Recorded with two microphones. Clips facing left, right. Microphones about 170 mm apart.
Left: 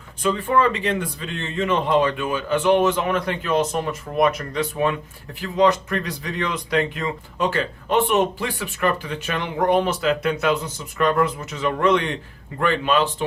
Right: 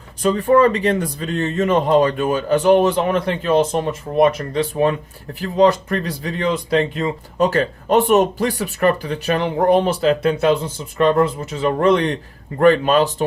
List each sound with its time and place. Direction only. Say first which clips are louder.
0.2 s speech: right 6 dB; 40° right (ahead or behind)
7.3 s speech: right 6 dB; 40° right (ahead or behind)